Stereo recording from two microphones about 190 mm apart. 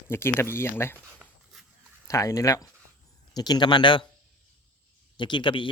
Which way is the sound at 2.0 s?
15° left (ahead or behind).